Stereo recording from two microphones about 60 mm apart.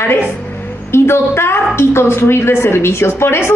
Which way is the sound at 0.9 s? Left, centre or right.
Left.